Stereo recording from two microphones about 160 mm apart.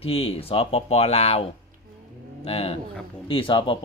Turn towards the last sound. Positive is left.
turn(degrees=35)  # may be behind; listen again after turning